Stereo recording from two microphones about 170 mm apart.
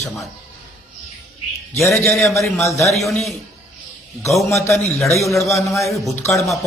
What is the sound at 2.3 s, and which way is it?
Speech, 15° left (ahead or behind).